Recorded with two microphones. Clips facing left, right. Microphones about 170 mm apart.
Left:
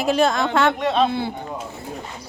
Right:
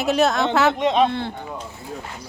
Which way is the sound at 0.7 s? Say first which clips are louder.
Right 1 dB; 15° right (ahead or behind).